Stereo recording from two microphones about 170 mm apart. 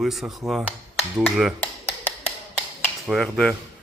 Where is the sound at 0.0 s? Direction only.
Centre (ahead or behind).